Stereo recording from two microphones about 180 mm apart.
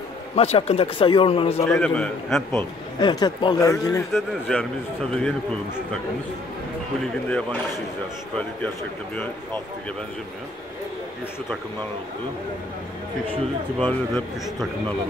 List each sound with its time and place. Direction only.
0.4 s speech: 35° left (ahead or behind)
1.7 s speech: 5° left (ahead or behind)
3.0 s speech: 25° left (ahead or behind)
4.1 s speech: 5° left (ahead or behind)
7.2 s speech: 5° left (ahead or behind)
9.1 s speech: 10° left (ahead or behind)
13.8 s speech: 5° left (ahead or behind)